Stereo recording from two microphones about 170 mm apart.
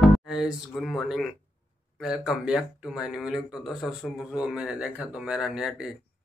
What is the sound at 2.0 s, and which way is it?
A man's voice, 5° right (ahead or behind).